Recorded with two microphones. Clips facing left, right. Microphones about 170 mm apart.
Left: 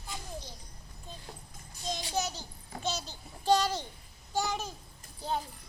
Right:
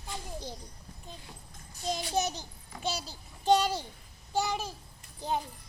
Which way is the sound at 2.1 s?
25° right (ahead or behind).